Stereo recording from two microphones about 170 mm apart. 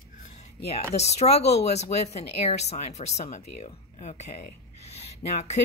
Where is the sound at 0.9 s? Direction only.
40° left (ahead or behind).